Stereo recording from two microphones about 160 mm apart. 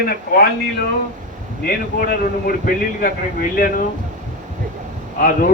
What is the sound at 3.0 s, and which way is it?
Speech, 60° left (ahead or behind).